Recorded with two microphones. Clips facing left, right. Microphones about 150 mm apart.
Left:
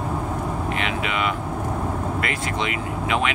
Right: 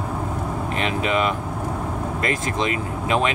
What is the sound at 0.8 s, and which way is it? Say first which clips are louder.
Speech: right 6 dB; 35° right (ahead or behind).